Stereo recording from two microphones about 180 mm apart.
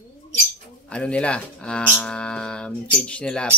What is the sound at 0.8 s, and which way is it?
A man's voice, 5° left (ahead or behind).